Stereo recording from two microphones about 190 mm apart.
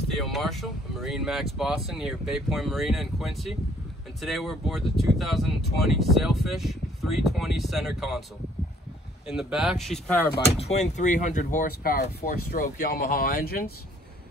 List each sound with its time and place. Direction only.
0.2 s speech: centre (ahead or behind)
9.3 s speech: 5° right (ahead or behind)
10.3 s speech: 35° left (ahead or behind); by 13.7 s 50° left (ahead or behind)